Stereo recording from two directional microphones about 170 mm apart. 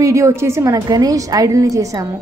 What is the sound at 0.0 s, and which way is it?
A woman's voice, 20° right (ahead or behind).